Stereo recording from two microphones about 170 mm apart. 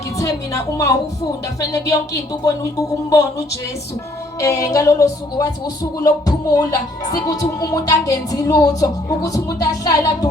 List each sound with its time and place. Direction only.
0.2 s speech: 20° left (ahead or behind)
3.1 s speech: 20° left (ahead or behind)